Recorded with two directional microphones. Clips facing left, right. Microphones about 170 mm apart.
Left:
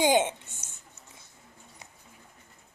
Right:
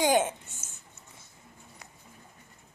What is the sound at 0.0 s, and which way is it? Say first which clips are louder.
Speech: left 1 dB; 20° left (ahead or behind).